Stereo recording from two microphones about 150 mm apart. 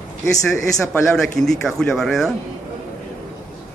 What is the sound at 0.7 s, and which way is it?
Speech, 5° left (ahead or behind).